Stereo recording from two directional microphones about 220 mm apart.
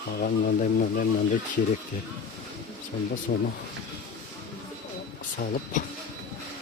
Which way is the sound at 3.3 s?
45° left (ahead or behind).